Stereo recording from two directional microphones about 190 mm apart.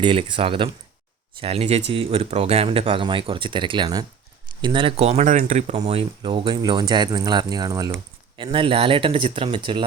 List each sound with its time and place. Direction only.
0.0 s speech: 25° right (ahead or behind)
8.4 s speech: 25° right (ahead or behind)